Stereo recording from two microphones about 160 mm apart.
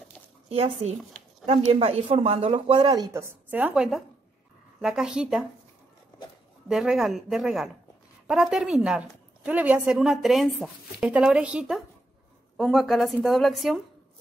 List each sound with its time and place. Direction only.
0.5 s speech: 40° right (ahead or behind)
3.4 s a woman's voice: 10° right (ahead or behind)
6.7 s a woman's voice: 5° right (ahead or behind)